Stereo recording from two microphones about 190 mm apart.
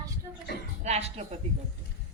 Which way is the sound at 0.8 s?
35° right (ahead or behind).